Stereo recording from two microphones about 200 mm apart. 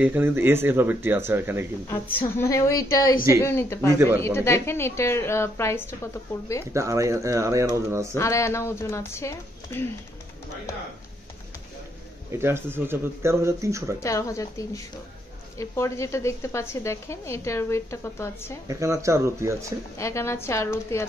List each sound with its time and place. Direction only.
0.0 s speech: 10° right (ahead or behind)
2.3 s a woman's voice: 15° left (ahead or behind)
6.7 s speech: 15° right (ahead or behind)
8.1 s a woman's voice: 15° left (ahead or behind)
12.3 s speech: 10° right (ahead or behind)
13.9 s a woman's voice: 15° left (ahead or behind)
18.7 s speech: 15° right (ahead or behind)
20.0 s a woman's voice: 15° left (ahead or behind)